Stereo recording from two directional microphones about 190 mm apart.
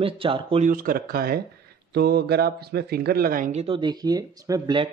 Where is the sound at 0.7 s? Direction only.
50° right (ahead or behind).